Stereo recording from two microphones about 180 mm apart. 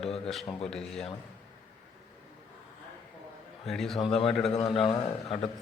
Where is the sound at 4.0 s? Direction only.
30° left (ahead or behind).